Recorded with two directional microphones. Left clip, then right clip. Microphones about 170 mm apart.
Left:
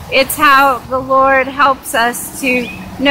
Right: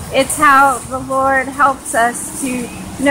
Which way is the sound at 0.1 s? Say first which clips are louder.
Left 1 dB; 10° left (ahead or behind).